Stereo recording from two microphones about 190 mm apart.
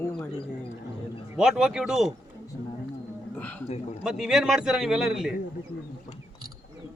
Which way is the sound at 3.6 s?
35° left (ahead or behind).